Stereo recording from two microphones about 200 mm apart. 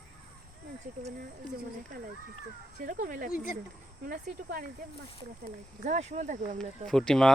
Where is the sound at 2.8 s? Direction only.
40° right (ahead or behind).